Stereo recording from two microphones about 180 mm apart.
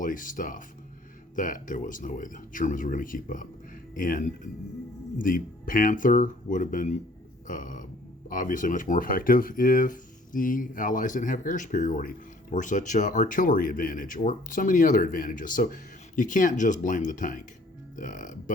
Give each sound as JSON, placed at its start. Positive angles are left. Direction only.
{"t": 0.0, "sound": "speech", "side_deg": 50}
{"t": 7.4, "sound": "burping", "side_deg": 45}
{"t": 8.3, "sound": "speech", "side_deg": 45}